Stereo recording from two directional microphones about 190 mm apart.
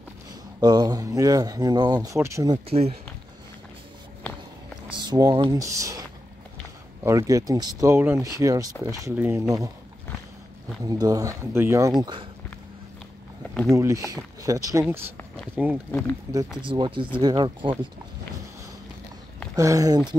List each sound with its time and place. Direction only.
0.6 s speech: 20° right (ahead or behind)
4.8 s speech: 20° right (ahead or behind)
10.8 s speech: 20° right (ahead or behind)
12.0 s speech: 25° right (ahead or behind)
13.7 s speech: 15° right (ahead or behind)
15.9 s speech: 10° left (ahead or behind)
16.6 s speech: 25° right (ahead or behind)
19.5 s speech: 15° right (ahead or behind)